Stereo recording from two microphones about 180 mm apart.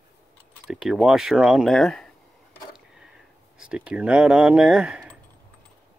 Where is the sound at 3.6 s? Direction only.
5° right (ahead or behind).